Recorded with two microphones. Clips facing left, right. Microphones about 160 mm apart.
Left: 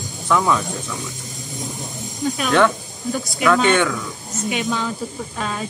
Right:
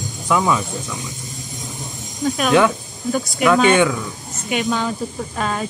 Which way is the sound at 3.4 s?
10° right (ahead or behind).